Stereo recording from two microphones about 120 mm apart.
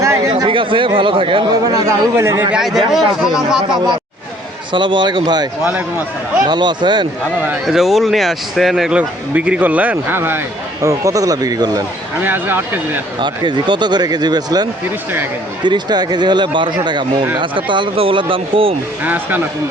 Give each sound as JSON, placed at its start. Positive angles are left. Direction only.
{"t": 0.0, "sound": "a sound", "side_deg": -25}
{"t": 0.4, "sound": "speech", "side_deg": -45}
{"t": 2.5, "sound": "a man's voice", "side_deg": -5}
{"t": 4.7, "sound": "speech", "side_deg": -40}
{"t": 6.5, "sound": "speech", "side_deg": -40}
{"t": 7.7, "sound": "speech", "side_deg": 0}
{"t": 12.2, "sound": "speech", "side_deg": -15}
{"t": 13.1, "sound": "speech", "side_deg": -40}
{"t": 19.0, "sound": "speech", "side_deg": -15}